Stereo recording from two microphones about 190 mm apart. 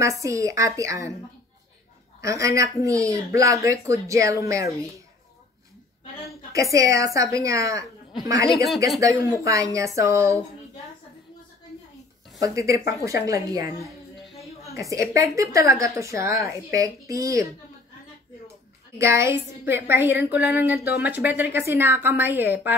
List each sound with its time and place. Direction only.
0.2 s speech: 15° right (ahead or behind)
2.2 s speech: 15° right (ahead or behind)
6.5 s speech: 15° right (ahead or behind)
9.0 s speech: 15° right (ahead or behind)
12.4 s speech: 15° right (ahead or behind)
14.8 s speech: 15° right (ahead or behind)
18.9 s speech: 15° right (ahead or behind)